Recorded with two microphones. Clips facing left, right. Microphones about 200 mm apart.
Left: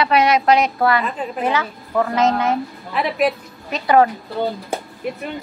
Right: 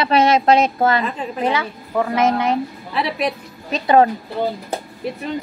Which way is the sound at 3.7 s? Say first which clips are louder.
Right 1 dB; 25° right (ahead or behind).